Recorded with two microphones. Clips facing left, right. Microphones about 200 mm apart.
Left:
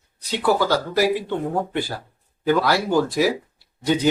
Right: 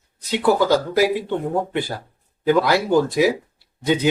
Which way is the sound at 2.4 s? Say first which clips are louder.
Right 2 dB; 20° right (ahead or behind).